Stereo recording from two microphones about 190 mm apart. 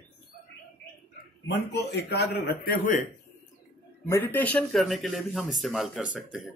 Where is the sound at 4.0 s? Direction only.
10° left (ahead or behind).